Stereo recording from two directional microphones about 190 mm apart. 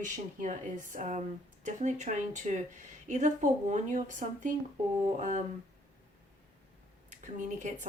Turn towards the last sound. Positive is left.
turn(degrees=-40)  # may be behind; listen again after turning